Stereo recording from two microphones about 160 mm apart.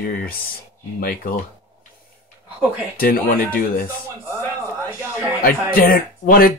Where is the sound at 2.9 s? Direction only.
65° left (ahead or behind).